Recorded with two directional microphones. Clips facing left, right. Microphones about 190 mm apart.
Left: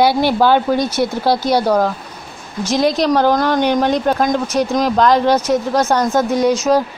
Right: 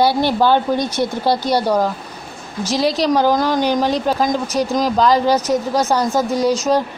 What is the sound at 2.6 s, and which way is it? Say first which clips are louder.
Speech: left 2 dB; 35° right (ahead or behind).